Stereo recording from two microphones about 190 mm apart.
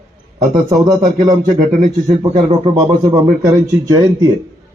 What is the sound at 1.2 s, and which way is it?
Speech, 20° right (ahead or behind).